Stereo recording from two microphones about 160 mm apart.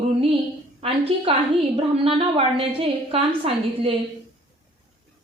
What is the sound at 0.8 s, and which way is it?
A woman's voice, 35° right (ahead or behind).